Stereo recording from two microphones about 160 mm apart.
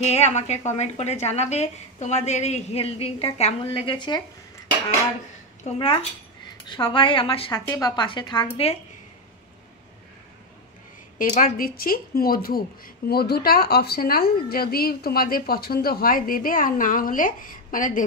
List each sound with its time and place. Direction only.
0.0 s a woman's voice: 45° left (ahead or behind)
3.6 s speech: 30° left (ahead or behind)
5.7 s a woman's voice: 45° left (ahead or behind)
6.7 s a woman's voice: 30° left (ahead or behind)
7.6 s speech: 20° left (ahead or behind)
8.5 s a woman's voice: 40° left (ahead or behind)
11.1 s a woman's voice: 55° left (ahead or behind)